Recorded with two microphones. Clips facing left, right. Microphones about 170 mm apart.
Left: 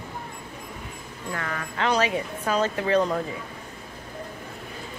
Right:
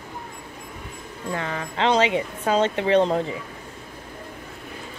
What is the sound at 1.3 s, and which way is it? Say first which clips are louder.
Speech: right 3 dB; 25° right (ahead or behind).